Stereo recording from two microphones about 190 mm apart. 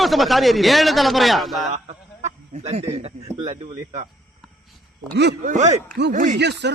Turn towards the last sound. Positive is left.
turn(degrees=-65)  # may be behind; listen again after turning